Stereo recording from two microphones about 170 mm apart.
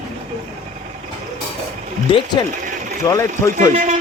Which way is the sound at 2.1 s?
25° left (ahead or behind).